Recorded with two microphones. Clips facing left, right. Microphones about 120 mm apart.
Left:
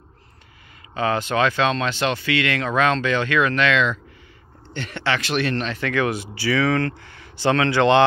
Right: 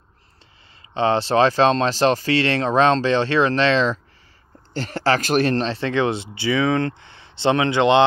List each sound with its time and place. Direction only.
0.9 s speech: 30° right (ahead or behind)